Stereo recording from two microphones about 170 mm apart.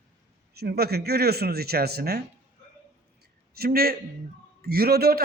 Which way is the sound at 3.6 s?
65° right (ahead or behind).